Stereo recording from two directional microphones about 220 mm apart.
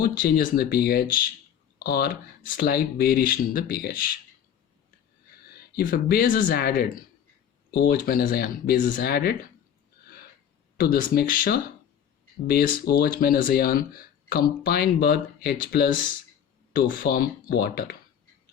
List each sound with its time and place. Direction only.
0.0 s speech: 40° left (ahead or behind)
5.7 s speech: 40° left (ahead or behind)
10.8 s speech: 40° left (ahead or behind)